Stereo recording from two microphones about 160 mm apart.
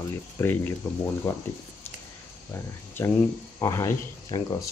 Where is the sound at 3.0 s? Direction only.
15° left (ahead or behind).